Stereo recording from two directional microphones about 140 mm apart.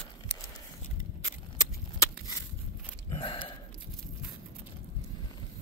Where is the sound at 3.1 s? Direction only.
40° left (ahead or behind).